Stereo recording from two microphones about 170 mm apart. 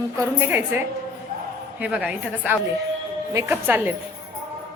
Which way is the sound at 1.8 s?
5° right (ahead or behind).